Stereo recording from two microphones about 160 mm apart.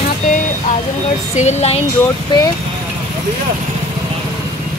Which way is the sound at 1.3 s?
45° left (ahead or behind).